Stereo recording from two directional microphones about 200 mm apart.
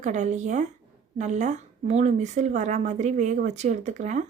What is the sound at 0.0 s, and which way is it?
A woman's voice, 35° right (ahead or behind).